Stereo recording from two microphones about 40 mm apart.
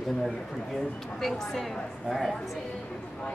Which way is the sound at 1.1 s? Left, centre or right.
Centre.